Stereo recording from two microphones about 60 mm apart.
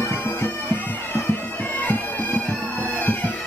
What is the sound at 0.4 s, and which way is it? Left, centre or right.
Bagpipes, left.